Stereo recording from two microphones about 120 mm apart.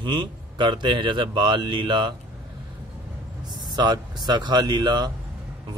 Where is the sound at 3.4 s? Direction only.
35° right (ahead or behind).